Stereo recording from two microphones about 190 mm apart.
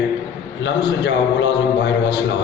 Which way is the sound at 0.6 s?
70° left (ahead or behind).